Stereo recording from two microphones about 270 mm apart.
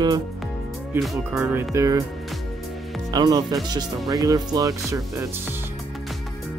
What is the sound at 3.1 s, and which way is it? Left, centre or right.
Speech, centre.